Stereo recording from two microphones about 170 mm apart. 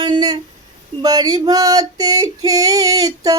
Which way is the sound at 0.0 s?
25° right (ahead or behind).